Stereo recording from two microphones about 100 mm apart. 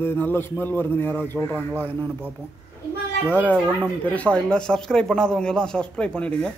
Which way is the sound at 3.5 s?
15° left (ahead or behind).